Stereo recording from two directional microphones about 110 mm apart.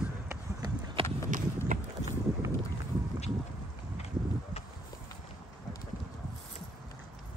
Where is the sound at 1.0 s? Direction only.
25° left (ahead or behind).